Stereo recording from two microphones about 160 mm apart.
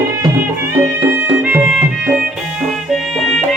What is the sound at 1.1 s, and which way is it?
Music, 10° right (ahead or behind).